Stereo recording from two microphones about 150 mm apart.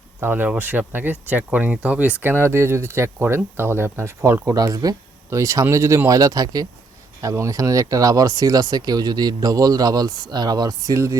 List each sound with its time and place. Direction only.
0.2 s speech: 15° right (ahead or behind)